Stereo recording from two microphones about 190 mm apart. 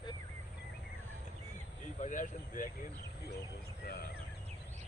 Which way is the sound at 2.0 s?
40° left (ahead or behind).